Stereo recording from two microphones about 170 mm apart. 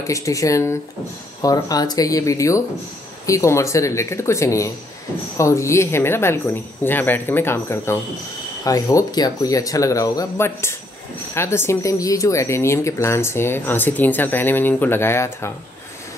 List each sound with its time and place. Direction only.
0.0 s speech: 20° left (ahead or behind)